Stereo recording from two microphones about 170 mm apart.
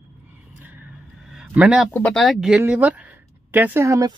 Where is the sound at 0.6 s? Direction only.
5° right (ahead or behind).